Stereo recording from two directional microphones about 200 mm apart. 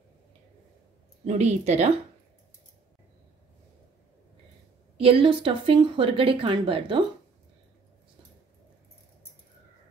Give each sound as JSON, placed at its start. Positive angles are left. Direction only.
{"t": 1.2, "sound": "speech", "side_deg": -35}
{"t": 4.9, "sound": "speech", "side_deg": -25}